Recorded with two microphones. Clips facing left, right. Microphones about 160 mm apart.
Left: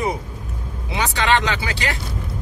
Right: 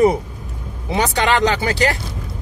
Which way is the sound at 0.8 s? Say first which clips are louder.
Right 3 dB; 40° right (ahead or behind).